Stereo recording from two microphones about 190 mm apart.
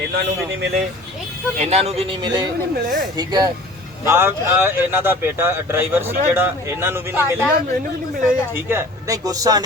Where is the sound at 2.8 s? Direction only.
45° right (ahead or behind).